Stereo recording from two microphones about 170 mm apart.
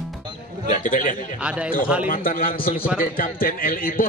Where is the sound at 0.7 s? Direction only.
50° left (ahead or behind).